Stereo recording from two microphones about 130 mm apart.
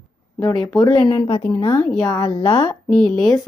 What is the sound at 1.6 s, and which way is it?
Speech, 20° left (ahead or behind).